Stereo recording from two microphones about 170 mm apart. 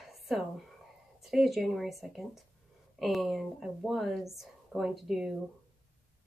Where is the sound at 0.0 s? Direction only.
Centre (ahead or behind).